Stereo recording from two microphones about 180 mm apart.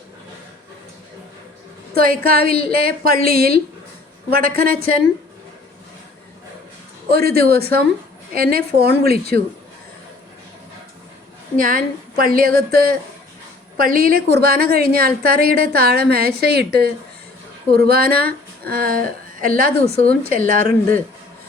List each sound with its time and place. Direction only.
2.0 s a woman's voice: 55° right (ahead or behind)
7.1 s a woman's voice: 55° right (ahead or behind)
11.5 s a woman's voice: 50° right (ahead or behind)